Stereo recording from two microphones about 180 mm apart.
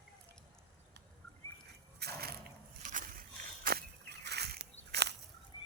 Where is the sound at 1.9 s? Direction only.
60° right (ahead or behind).